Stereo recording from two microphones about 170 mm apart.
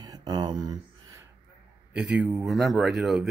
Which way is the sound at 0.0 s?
20° right (ahead or behind).